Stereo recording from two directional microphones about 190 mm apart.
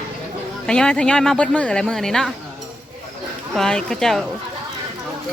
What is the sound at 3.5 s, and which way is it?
Speech, 5° left (ahead or behind).